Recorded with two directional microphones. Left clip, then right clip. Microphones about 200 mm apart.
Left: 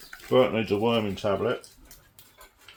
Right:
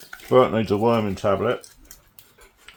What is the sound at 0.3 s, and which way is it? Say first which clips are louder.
Speech: right 5 dB; 40° right (ahead or behind).